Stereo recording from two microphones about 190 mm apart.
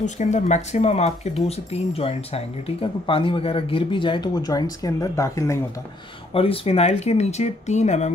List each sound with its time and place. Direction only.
0.0 s speech: 40° left (ahead or behind); by 5.6 s 15° left (ahead or behind)
6.3 s speech: 30° left (ahead or behind)